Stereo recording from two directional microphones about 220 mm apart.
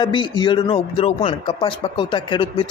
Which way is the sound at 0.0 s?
20° left (ahead or behind).